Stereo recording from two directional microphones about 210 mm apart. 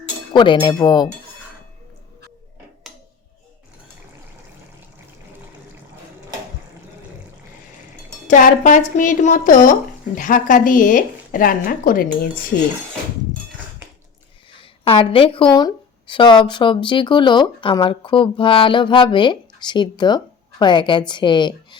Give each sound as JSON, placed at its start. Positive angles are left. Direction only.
{"t": 0.3, "sound": "a woman's voice", "side_deg": 20}
{"t": 8.3, "sound": "a woman's voice", "side_deg": 40}
{"t": 14.6, "sound": "a woman's voice", "side_deg": 25}